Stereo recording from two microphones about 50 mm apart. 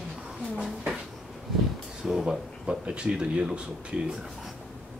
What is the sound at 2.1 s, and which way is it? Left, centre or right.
Speech, centre.